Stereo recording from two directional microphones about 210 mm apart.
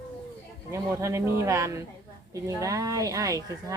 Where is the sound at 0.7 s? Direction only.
15° right (ahead or behind).